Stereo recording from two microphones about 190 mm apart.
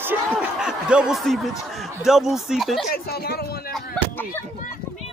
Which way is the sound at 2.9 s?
55° left (ahead or behind).